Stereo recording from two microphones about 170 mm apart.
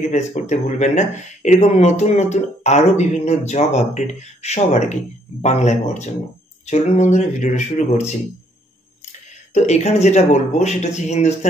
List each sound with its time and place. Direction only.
0.1 s speech: 45° left (ahead or behind)
9.5 s speech: 40° left (ahead or behind)